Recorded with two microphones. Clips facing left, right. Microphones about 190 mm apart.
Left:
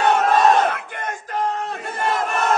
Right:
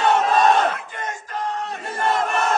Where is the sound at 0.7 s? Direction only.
60° left (ahead or behind).